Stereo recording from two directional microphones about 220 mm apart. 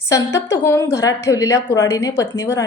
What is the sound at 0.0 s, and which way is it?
A woman's voice, 15° left (ahead or behind).